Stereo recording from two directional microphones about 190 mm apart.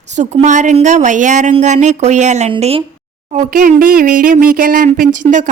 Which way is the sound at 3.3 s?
45° right (ahead or behind).